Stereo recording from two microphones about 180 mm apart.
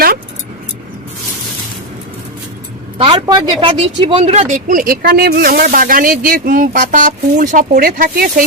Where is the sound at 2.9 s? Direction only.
30° right (ahead or behind).